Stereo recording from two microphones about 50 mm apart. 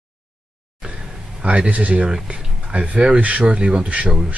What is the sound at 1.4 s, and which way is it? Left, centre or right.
Speech, right.